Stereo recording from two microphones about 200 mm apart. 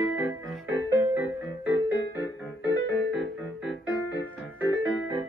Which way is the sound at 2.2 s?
20° left (ahead or behind).